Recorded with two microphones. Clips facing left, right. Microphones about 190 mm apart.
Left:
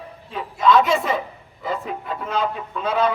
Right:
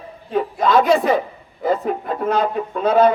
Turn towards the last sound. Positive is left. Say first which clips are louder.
# right 7 dB
turn(degrees=-50)  # may be behind; listen again after turning